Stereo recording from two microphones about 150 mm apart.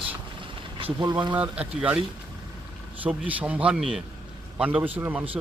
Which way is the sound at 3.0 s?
10° right (ahead or behind).